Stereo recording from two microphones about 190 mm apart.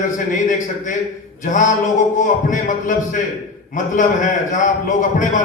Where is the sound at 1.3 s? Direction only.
40° left (ahead or behind).